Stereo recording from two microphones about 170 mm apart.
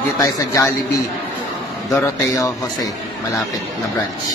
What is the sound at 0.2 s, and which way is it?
Speech, 20° left (ahead or behind).